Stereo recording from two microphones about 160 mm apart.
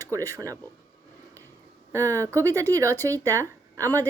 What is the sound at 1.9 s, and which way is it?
A woman's voice, 20° right (ahead or behind).